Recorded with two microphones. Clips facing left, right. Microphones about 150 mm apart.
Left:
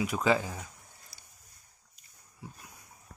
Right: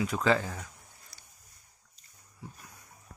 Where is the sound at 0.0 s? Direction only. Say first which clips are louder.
Even; 15° left (ahead or behind).